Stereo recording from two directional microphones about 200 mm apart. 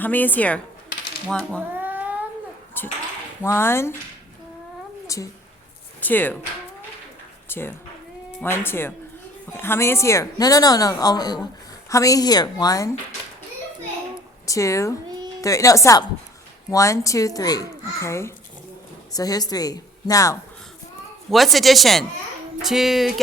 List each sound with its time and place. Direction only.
0.0 s a woman's voice: 10° left (ahead or behind)
1.8 s cat: 10° right (ahead or behind)
2.8 s a sound: 10° left (ahead or behind)
3.4 s a woman's voice: 15° left (ahead or behind)
5.0 s a sound: 15° left (ahead or behind)
6.0 s speech: 10° left (ahead or behind)
7.4 s a woman's voice: 10° left (ahead or behind)
14.4 s a woman's voice: 15° left (ahead or behind)
21.2 s speech: centre (ahead or behind)